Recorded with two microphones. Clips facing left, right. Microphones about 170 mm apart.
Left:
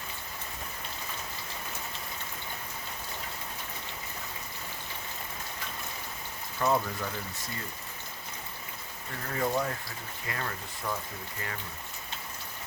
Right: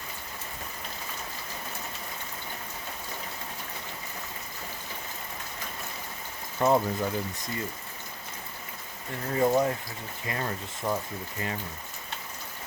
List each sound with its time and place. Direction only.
6.6 s speech: 25° right (ahead or behind)
9.3 s speech: 25° right (ahead or behind)